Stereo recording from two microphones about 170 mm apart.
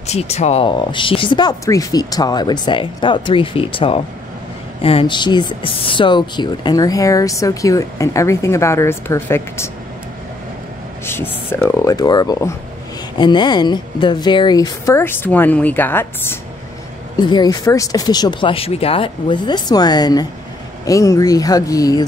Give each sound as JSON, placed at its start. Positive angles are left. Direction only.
{"t": 0.0, "sound": "speech", "side_deg": 40}
{"t": 11.1, "sound": "speech", "side_deg": 15}
{"t": 17.2, "sound": "speech", "side_deg": 25}